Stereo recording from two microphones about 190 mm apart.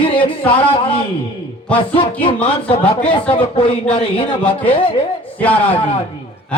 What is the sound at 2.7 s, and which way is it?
A man's voice, 30° left (ahead or behind).